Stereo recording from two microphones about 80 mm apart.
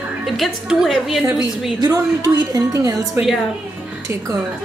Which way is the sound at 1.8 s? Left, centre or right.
Right.